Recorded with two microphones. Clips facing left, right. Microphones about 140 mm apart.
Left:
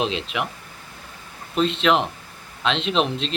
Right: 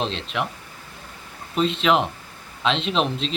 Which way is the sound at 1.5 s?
Centre (ahead or behind).